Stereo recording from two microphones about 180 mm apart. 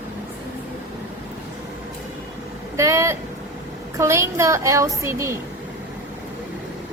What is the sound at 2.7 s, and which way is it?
A woman's voice, 15° right (ahead or behind).